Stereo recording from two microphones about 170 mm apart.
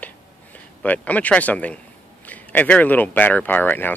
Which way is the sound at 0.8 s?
10° left (ahead or behind).